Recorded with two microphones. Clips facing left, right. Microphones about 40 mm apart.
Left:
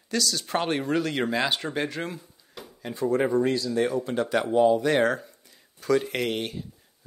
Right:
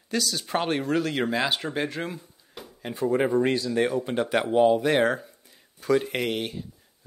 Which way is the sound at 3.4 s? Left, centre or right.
Right.